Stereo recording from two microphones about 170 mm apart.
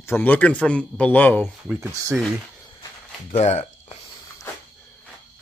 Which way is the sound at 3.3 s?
40° left (ahead or behind).